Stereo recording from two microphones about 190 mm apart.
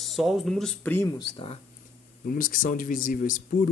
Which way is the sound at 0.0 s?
Centre (ahead or behind).